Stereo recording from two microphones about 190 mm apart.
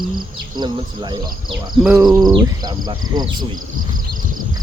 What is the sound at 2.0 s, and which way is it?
Speech, 20° right (ahead or behind).